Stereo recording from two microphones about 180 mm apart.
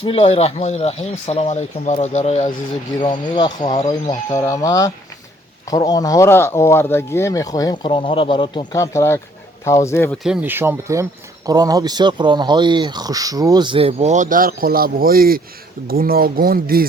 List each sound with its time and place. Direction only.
0.0 s speech: 30° left (ahead or behind)
3.0 s speech: 25° left (ahead or behind)
4.4 s speech: 20° left (ahead or behind)
10.2 s speech: 5° right (ahead or behind); by 16.8 s 55° right (ahead or behind)